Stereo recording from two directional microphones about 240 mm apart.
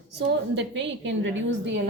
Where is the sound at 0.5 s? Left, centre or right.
Right.